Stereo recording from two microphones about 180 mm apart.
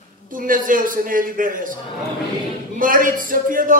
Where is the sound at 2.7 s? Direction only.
50° right (ahead or behind).